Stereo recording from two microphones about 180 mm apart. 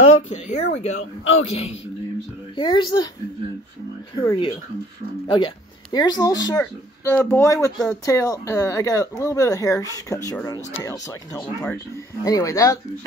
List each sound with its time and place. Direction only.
0.0 s a child's voice: 40° left (ahead or behind); by 3.1 s 25° left (ahead or behind)
4.2 s a child's voice: 30° left (ahead or behind)
12.3 s speech: 15° left (ahead or behind)